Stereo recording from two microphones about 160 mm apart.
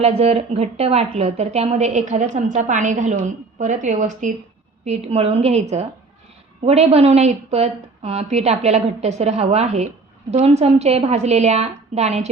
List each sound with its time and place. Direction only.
0.0 s a woman's voice: 40° right (ahead or behind)
4.9 s a woman's voice: 40° right (ahead or behind)